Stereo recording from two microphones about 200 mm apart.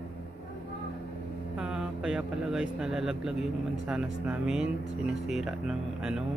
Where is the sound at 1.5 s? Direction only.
5° right (ahead or behind).